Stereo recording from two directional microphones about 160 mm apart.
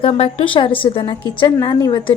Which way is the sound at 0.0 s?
35° left (ahead or behind).